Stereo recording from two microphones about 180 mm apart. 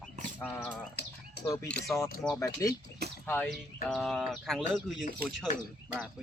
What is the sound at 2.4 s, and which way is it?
Speech, 20° left (ahead or behind).